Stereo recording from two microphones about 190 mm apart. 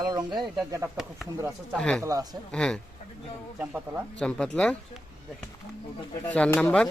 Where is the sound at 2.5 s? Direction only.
5° left (ahead or behind).